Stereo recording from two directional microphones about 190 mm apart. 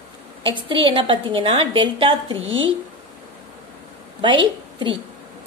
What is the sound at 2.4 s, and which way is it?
Speech, 90° right.